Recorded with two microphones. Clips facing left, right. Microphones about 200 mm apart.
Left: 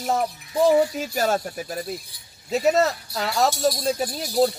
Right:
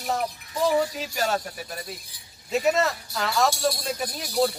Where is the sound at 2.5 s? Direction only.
40° left (ahead or behind).